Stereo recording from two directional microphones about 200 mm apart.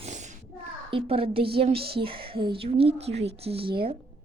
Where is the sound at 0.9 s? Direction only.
30° right (ahead or behind).